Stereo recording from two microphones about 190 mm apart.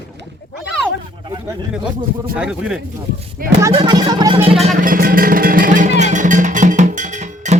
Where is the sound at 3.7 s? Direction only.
25° right (ahead or behind).